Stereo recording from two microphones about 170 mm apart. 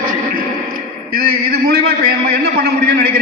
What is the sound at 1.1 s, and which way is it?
A man's voice, 60° right (ahead or behind).